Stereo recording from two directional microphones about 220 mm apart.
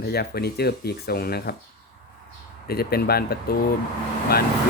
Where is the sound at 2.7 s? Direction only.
45° left (ahead or behind).